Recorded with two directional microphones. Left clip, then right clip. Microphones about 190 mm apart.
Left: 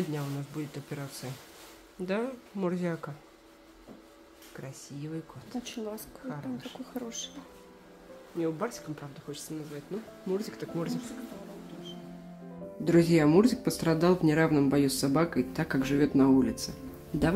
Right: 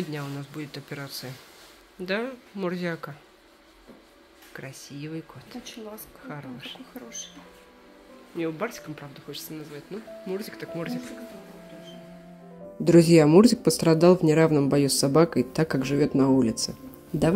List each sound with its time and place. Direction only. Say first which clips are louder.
0.1 s speech: right 2 dB; centre (ahead or behind)
4.6 s speech: right 5 dB; 10° right (ahead or behind)
8.4 s speech: right 2 dB; 15° right (ahead or behind)
9.9 s speech: even; 10° left (ahead or behind)
12.8 s speech: right 7 dB; 25° right (ahead or behind)